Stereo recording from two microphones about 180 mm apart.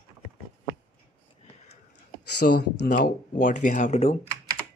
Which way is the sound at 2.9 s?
45° left (ahead or behind).